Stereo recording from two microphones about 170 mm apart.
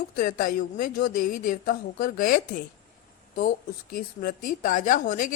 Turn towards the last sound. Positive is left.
turn(degrees=50)  # may be behind; listen again after turning